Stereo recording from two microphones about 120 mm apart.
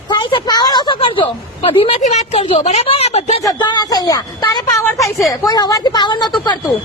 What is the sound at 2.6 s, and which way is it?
Speech, 55° left (ahead or behind).